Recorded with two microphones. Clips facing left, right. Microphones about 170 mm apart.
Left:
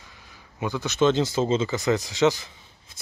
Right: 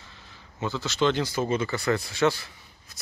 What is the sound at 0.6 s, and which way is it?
Speech, 15° left (ahead or behind).